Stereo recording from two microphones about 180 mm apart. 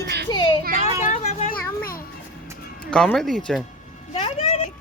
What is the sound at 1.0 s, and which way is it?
Children playing, 40° left (ahead or behind).